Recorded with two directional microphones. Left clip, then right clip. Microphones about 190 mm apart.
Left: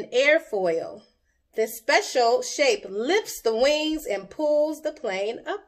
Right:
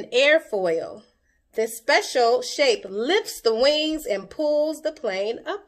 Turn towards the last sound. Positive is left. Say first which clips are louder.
# right 2 dB
turn(degrees=-40)  # may be behind; listen again after turning